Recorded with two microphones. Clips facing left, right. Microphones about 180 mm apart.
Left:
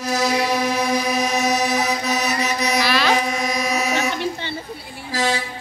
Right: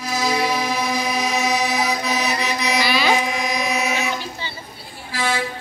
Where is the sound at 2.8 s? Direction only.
5° right (ahead or behind).